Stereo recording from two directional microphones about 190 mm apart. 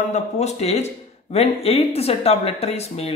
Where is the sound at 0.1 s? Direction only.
35° left (ahead or behind).